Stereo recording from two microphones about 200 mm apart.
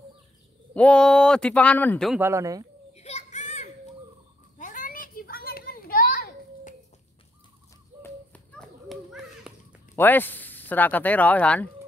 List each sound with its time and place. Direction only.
0.7 s speech: 5° left (ahead or behind)
2.1 s speech: 15° right (ahead or behind)
2.9 s children playing: 30° left (ahead or behind)
4.6 s a sound: 40° left (ahead or behind)
8.0 s a sound: 5° left (ahead or behind)
9.9 s speech: 10° left (ahead or behind)